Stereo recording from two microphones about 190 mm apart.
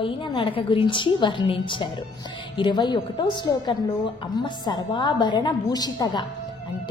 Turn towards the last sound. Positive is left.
turn(degrees=25)  # may be behind; listen again after turning